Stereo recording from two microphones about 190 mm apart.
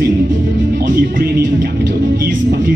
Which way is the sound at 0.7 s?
45° right (ahead or behind).